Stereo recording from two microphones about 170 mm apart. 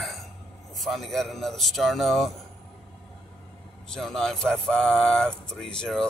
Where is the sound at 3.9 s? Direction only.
5° left (ahead or behind).